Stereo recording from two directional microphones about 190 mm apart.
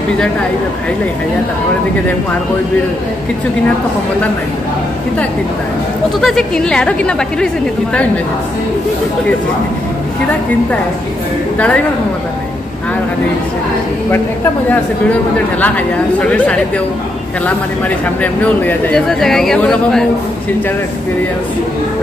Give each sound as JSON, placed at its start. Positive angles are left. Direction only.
{"t": 6.2, "sound": "speech", "side_deg": 0}
{"t": 11.5, "sound": "a woman's voice", "side_deg": 5}
{"t": 14.1, "sound": "speech", "side_deg": 10}